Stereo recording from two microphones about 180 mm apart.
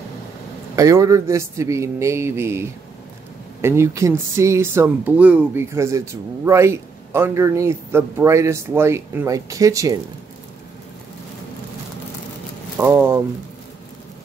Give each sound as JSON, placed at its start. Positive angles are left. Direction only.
{"t": 0.7, "sound": "speech", "side_deg": -20}
{"t": 12.7, "sound": "speech", "side_deg": -10}